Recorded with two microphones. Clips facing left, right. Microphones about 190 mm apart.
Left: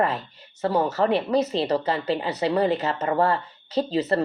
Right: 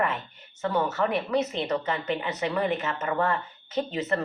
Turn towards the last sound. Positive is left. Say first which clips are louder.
# left 5 dB
turn(degrees=30)  # may be behind; listen again after turning